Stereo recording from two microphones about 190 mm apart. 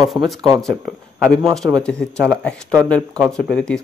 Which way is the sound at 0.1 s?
Centre (ahead or behind).